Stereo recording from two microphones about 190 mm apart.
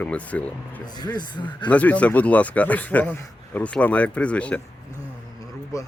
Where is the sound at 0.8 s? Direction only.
20° left (ahead or behind).